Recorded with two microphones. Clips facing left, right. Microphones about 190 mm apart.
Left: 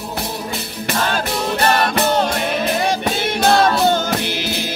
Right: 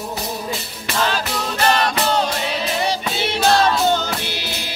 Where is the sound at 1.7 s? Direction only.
55° left (ahead or behind).